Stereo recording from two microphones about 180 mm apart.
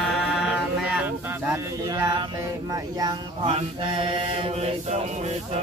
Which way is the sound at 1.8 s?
20° right (ahead or behind).